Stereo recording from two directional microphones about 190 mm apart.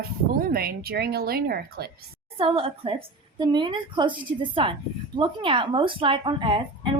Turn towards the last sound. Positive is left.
turn(degrees=-25)  # may be behind; listen again after turning